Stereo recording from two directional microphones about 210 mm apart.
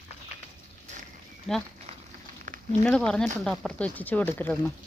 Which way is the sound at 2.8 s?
5° left (ahead or behind).